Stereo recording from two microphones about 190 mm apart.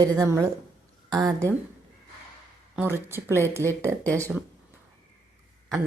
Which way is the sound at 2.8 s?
10° right (ahead or behind).